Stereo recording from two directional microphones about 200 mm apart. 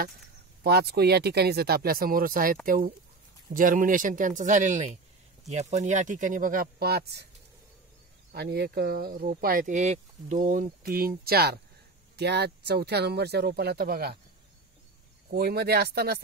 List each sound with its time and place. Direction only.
0.7 s speech: 55° right (ahead or behind)
8.3 s speech: 55° right (ahead or behind)
15.2 s speech: 50° right (ahead or behind)